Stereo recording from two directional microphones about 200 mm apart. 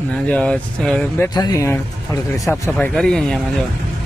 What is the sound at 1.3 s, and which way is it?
Speech, 20° left (ahead or behind).